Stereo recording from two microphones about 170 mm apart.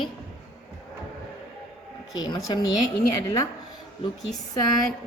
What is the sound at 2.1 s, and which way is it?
Speech, 25° left (ahead or behind).